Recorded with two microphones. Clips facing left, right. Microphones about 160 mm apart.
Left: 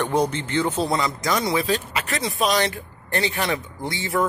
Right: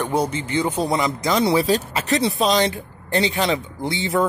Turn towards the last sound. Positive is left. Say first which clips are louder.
# right 3 dB
turn(degrees=-20)  # may be behind; listen again after turning